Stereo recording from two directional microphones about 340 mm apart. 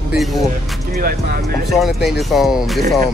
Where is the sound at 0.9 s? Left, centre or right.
Right.